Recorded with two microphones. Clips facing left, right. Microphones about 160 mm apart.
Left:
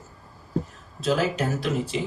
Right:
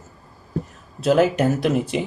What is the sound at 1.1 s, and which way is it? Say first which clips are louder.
Speech: right 7 dB; 60° right (ahead or behind).